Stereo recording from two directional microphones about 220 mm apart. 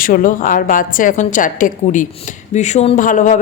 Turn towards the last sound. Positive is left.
turn(degrees=35)  # may be behind; listen again after turning